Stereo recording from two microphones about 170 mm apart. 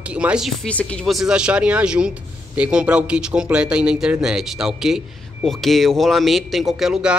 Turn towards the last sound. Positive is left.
turn(degrees=-5)  # may be behind; listen again after turning